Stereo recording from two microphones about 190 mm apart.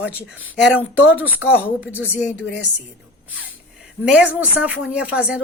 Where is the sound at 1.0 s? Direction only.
90° left.